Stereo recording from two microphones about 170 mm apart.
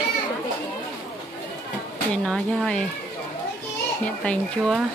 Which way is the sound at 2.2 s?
5° left (ahead or behind).